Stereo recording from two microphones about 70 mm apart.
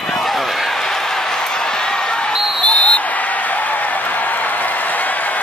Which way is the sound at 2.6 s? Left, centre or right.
Centre.